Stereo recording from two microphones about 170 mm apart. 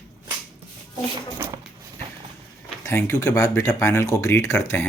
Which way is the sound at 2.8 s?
15° left (ahead or behind).